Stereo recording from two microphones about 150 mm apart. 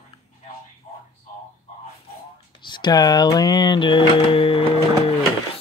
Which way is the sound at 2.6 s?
30° left (ahead or behind).